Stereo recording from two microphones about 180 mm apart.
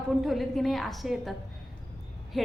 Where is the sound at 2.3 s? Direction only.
Centre (ahead or behind).